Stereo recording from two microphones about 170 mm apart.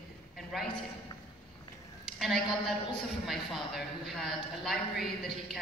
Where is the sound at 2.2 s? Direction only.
Centre (ahead or behind).